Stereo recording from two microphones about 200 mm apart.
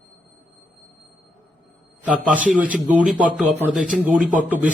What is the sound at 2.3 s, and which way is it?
A man's voice, 5° right (ahead or behind).